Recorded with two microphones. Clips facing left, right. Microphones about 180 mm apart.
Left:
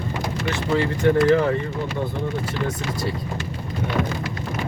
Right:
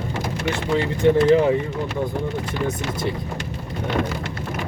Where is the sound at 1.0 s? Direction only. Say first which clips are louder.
Right 3 dB; 20° right (ahead or behind).